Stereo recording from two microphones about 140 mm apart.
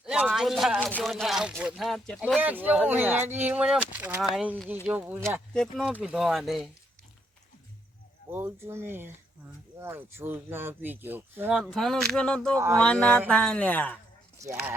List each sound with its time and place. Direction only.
0.0 s a sound: 5° right (ahead or behind)
1.0 s speech: centre (ahead or behind)
2.4 s speech: 10° right (ahead or behind)
5.5 s speech: centre (ahead or behind)
8.3 s speech: 15° right (ahead or behind)
11.5 s speech: centre (ahead or behind)
12.5 s a sound: 20° right (ahead or behind)
12.8 s speech: 5° left (ahead or behind)